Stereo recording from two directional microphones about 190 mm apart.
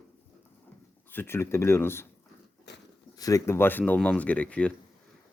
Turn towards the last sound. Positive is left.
turn(degrees=5)  # may be behind; listen again after turning